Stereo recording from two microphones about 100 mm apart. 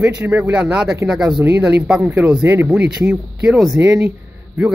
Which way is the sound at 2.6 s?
10° right (ahead or behind).